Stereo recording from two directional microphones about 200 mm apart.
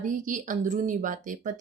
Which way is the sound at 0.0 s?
40° right (ahead or behind).